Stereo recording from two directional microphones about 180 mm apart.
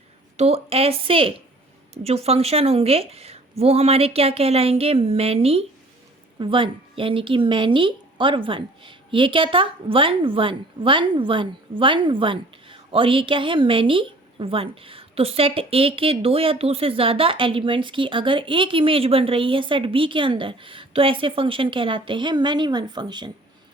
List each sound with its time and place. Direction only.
0.3 s a woman's voice: 35° right (ahead or behind)